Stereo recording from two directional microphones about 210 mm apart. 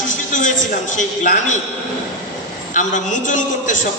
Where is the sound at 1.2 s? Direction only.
35° left (ahead or behind).